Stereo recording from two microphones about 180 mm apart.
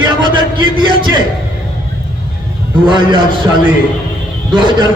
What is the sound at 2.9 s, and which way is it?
Speech, 25° right (ahead or behind).